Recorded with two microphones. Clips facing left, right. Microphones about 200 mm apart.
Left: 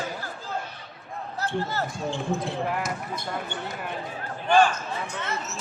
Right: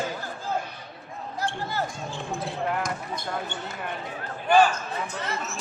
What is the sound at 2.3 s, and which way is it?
Speech, 5° left (ahead or behind).